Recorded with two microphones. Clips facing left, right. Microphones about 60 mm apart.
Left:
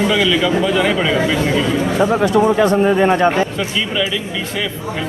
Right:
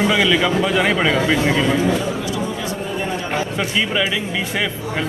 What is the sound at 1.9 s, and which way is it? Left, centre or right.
Speech, left.